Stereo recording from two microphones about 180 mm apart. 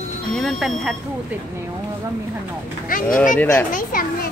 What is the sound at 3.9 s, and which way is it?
Speech, 50° left (ahead or behind).